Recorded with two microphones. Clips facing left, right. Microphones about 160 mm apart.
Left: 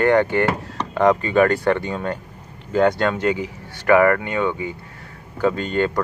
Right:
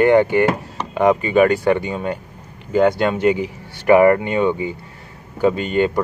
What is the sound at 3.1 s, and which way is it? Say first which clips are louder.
Speech: right 4 dB; 15° right (ahead or behind).